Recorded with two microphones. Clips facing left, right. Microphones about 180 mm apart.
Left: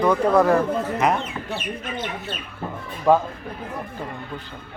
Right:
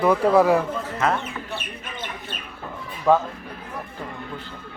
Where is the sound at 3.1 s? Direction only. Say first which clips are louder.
Left 1 dB; 15° left (ahead or behind).